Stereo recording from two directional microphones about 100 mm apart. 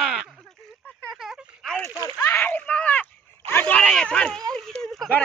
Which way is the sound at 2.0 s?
35° left (ahead or behind).